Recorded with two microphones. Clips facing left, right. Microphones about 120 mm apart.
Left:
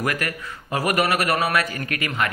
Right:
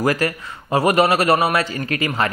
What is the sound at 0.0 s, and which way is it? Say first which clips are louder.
A man's voice: right 6 dB; 30° right (ahead or behind).